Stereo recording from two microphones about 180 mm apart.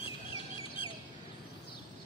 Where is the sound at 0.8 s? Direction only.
30° left (ahead or behind).